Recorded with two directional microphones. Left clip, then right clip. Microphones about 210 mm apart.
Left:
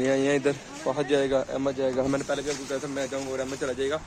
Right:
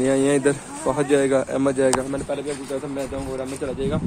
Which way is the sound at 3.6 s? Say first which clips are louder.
Right 2 dB; 15° left (ahead or behind).